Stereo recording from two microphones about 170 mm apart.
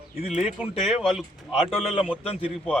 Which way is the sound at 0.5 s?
5° right (ahead or behind).